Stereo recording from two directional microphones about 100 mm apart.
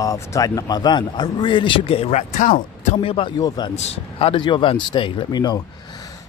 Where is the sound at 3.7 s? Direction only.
90° left; by 5.6 s 45° left (ahead or behind).